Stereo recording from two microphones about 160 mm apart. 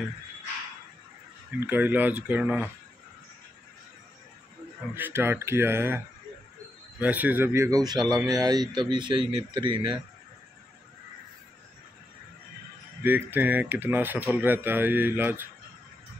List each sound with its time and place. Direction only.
1.6 s speech: 10° right (ahead or behind)
4.9 s a man's voice: 15° right (ahead or behind); by 9.9 s 30° right (ahead or behind)
13.0 s speech: 10° right (ahead or behind)